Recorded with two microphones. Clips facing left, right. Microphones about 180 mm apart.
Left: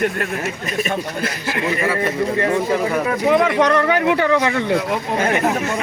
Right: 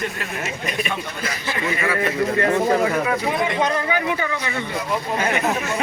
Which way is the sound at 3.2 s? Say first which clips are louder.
Left 6 dB; 75° left (ahead or behind).